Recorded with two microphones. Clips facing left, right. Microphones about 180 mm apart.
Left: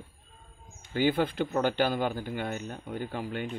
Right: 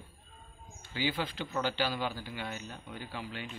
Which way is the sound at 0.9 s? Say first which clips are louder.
Left 8 dB; 50° left (ahead or behind).